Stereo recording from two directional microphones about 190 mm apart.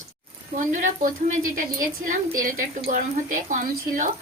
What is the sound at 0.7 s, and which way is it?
A woman's voice, 40° right (ahead or behind).